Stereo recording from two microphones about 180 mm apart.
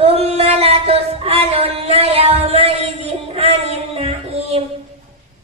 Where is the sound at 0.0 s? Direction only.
35° right (ahead or behind).